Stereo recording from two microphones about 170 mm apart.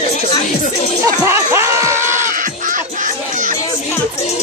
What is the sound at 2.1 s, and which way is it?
Music, 50° right (ahead or behind).